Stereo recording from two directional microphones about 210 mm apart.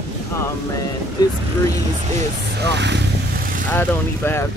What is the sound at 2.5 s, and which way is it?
Speech, 55° right (ahead or behind).